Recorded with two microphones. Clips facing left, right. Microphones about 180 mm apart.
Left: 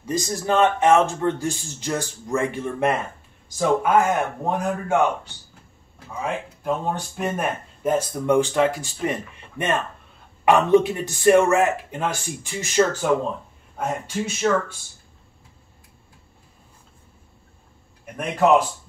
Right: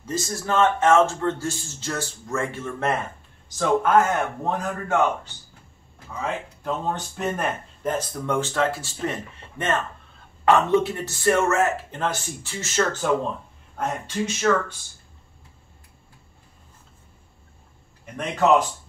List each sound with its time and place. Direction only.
0.0 s a man's voice: 15° left (ahead or behind)
6.1 s a man's voice: 10° left (ahead or behind)
18.0 s a man's voice: 5° left (ahead or behind)